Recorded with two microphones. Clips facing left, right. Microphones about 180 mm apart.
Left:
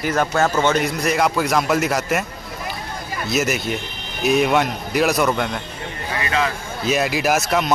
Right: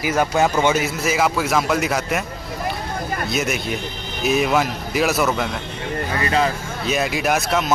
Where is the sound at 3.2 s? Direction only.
Centre (ahead or behind).